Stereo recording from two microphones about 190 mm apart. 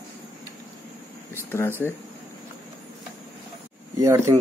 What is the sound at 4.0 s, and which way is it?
Speech, 15° right (ahead or behind).